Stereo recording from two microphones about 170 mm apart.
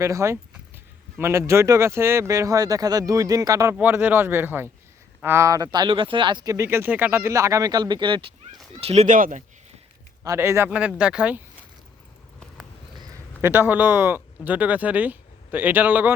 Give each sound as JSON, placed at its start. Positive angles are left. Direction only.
{"t": 0.0, "sound": "speech", "side_deg": -15}
{"t": 8.8, "sound": "speech", "side_deg": -40}
{"t": 10.2, "sound": "speech", "side_deg": -15}
{"t": 13.4, "sound": "speech", "side_deg": -10}